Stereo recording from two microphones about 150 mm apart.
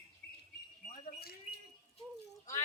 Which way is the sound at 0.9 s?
75° left (ahead or behind).